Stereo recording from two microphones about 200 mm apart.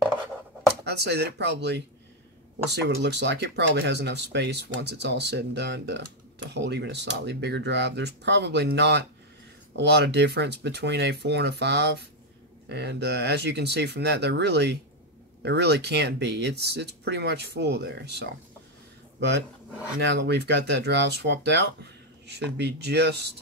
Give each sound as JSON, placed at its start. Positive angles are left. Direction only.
{"t": 0.8, "sound": "speech", "side_deg": -55}